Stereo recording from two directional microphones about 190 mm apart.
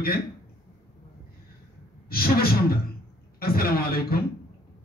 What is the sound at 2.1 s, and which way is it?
Speech, 50° left (ahead or behind).